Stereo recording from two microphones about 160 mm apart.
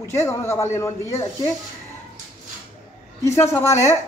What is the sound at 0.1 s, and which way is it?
Speech, 20° left (ahead or behind).